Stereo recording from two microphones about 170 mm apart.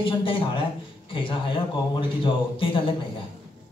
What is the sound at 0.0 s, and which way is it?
A man's voice, 30° left (ahead or behind).